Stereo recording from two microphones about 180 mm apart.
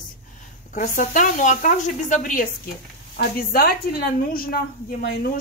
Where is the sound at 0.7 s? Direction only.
45° left (ahead or behind).